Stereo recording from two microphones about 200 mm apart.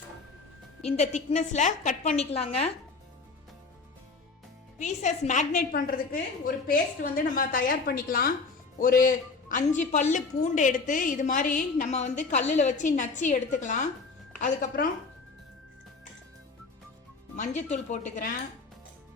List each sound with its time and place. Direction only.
0.9 s a woman's voice: 35° left (ahead or behind)
4.8 s a woman's voice: 35° left (ahead or behind)
17.3 s a woman's voice: 35° left (ahead or behind)